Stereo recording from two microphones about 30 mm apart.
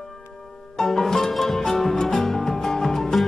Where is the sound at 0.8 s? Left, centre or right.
Centre.